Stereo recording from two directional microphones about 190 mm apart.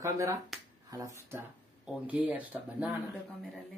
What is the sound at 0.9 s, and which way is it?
Speech, 15° right (ahead or behind).